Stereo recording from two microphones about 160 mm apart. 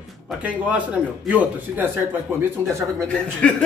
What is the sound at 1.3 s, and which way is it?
Speech, 10° right (ahead or behind).